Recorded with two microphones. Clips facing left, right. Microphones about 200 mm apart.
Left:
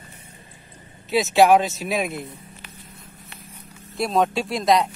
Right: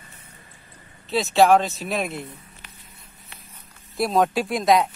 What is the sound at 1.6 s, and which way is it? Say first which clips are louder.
Speech: left 2 dB; centre (ahead or behind).